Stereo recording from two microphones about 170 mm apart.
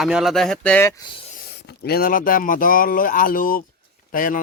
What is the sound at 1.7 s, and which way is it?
Speech, 65° left (ahead or behind).